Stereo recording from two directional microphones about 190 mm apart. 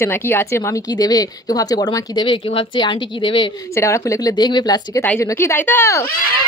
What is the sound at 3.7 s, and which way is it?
A woman's voice, 15° left (ahead or behind).